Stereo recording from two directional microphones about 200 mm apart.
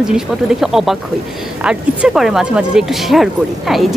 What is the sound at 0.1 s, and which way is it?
Speech, centre (ahead or behind).